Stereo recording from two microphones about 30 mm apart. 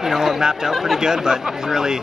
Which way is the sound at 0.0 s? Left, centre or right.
Centre.